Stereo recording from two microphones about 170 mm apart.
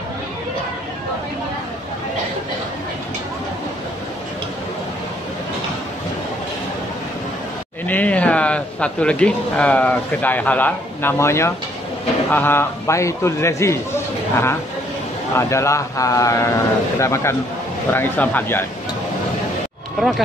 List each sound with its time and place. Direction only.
7.8 s a man's voice: 10° left (ahead or behind)
20.0 s speech: centre (ahead or behind)